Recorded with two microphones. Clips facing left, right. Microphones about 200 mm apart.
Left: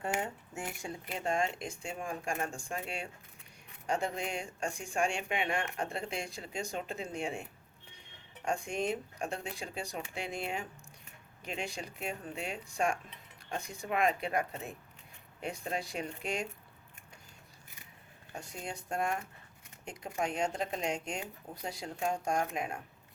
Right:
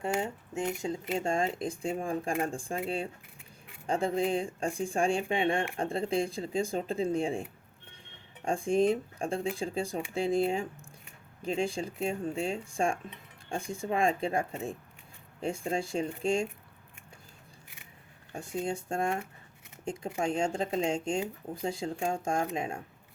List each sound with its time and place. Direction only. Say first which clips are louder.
0.2 s speech: right 5 dB; 20° right (ahead or behind)
8.4 s speech: right 8 dB; 30° right (ahead or behind)
18.3 s speech: right 9 dB; 25° right (ahead or behind)